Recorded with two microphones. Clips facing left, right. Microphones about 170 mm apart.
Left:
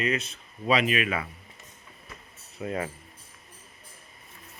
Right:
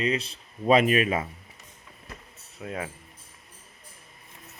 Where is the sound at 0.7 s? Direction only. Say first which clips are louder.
Right 4 dB; 45° right (ahead or behind).